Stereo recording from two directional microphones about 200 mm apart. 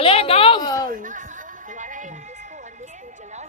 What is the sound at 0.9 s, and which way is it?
Music, 40° right (ahead or behind).